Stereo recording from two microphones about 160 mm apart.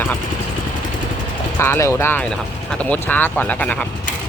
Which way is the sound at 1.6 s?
15° left (ahead or behind).